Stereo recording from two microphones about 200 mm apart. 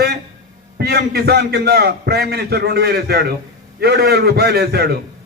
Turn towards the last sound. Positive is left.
turn(degrees=-55)  # may be behind; listen again after turning